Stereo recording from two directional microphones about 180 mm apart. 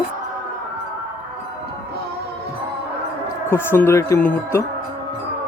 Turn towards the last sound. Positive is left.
turn(degrees=10)  # may be behind; listen again after turning